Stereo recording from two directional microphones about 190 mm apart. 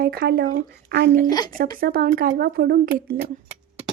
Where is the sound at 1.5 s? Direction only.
50° right (ahead or behind).